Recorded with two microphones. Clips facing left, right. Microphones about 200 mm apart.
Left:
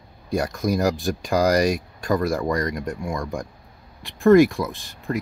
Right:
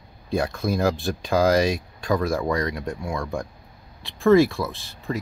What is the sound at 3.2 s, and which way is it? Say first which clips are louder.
Speech: even; 15° left (ahead or behind).